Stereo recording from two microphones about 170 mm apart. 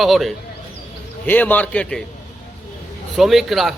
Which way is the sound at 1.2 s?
10° left (ahead or behind).